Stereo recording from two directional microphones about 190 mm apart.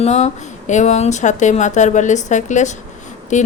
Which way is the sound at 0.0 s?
35° left (ahead or behind).